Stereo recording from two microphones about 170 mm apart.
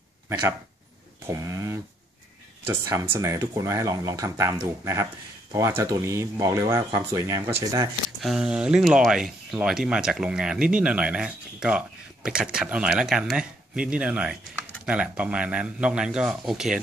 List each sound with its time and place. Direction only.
1.2 s speech: 20° right (ahead or behind)
8.2 s speech: 5° right (ahead or behind)